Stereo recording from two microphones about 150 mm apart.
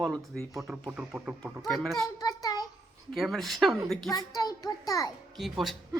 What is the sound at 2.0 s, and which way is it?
Speech, 25° left (ahead or behind).